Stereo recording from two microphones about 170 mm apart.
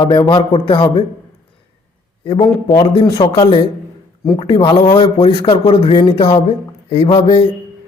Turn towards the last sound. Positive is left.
turn(degrees=30)  # may be behind; listen again after turning